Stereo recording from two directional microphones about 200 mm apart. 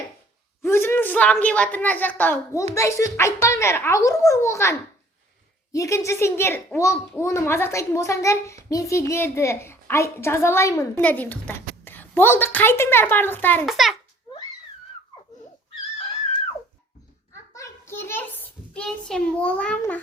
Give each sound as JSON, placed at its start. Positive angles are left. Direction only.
{"t": 0.6, "sound": "a woman's voice", "side_deg": 10}
{"t": 13.7, "sound": "a child's voice", "side_deg": 0}
{"t": 17.5, "sound": "a child's voice", "side_deg": 15}